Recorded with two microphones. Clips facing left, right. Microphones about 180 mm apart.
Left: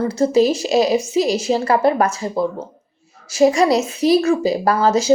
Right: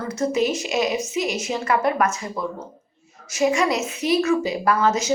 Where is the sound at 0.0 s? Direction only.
30° left (ahead or behind).